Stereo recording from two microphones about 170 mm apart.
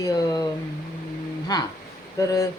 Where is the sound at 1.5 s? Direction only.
25° left (ahead or behind).